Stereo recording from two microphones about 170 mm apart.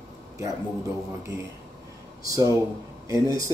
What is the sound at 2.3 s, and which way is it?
Speech, 20° right (ahead or behind).